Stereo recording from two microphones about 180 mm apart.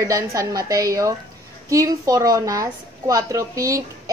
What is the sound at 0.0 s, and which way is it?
A woman's voice, 15° right (ahead or behind).